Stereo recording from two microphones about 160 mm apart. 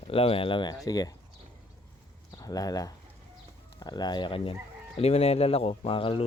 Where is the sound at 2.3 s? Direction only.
25° left (ahead or behind).